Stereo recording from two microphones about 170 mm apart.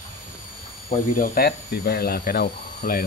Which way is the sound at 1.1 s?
65° left (ahead or behind).